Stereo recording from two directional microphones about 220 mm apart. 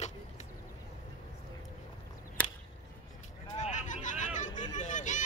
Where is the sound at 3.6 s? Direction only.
35° left (ahead or behind).